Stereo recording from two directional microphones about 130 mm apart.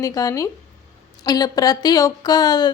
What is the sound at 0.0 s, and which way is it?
A woman's voice, 25° left (ahead or behind).